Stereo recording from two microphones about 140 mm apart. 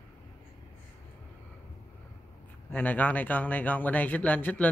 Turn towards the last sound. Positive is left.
turn(degrees=10)  # may be behind; listen again after turning